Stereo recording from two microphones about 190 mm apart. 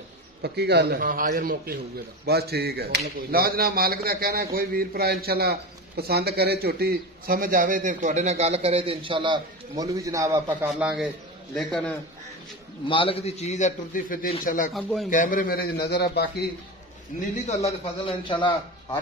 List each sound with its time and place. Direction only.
0.4 s speech: 60° right (ahead or behind)
2.2 s speech: 55° right (ahead or behind); by 10.7 s 15° right (ahead or behind)
10.7 s a man's voice: 5° right (ahead or behind)
12.8 s a man's voice: 30° left (ahead or behind); by 14.7 s 45° left (ahead or behind)
14.7 s a man's voice: centre (ahead or behind)
15.0 s a man's voice: 45° left (ahead or behind)
15.9 s a man's voice: 60° left (ahead or behind)
18.0 s a man's voice: 25° left (ahead or behind)